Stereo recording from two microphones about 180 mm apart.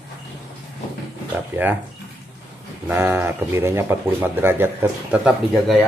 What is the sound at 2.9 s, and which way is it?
Speech, 15° right (ahead or behind).